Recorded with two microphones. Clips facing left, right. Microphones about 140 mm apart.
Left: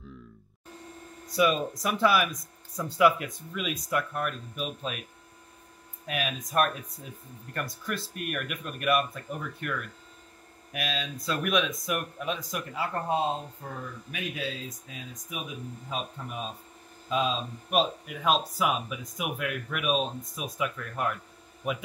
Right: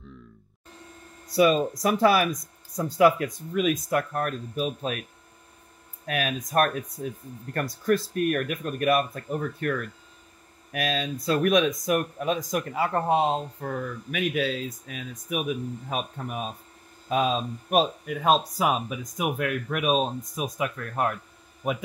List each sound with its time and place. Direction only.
1.3 s speech: 40° right (ahead or behind)
6.0 s speech: 45° right (ahead or behind)
7.0 s speech: 65° right (ahead or behind)
7.8 s speech: 40° right (ahead or behind)
12.8 s speech: 70° right (ahead or behind)
15.9 s speech: 55° right (ahead or behind)